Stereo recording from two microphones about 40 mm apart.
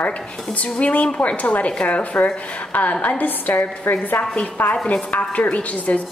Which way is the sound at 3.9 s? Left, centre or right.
Left.